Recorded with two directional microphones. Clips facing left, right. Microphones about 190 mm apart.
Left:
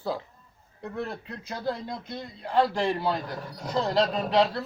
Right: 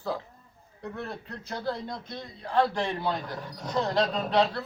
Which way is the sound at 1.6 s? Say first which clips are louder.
Left 2 dB; 5° left (ahead or behind).